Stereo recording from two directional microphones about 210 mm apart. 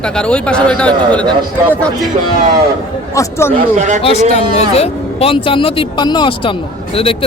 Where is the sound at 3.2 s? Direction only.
15° left (ahead or behind).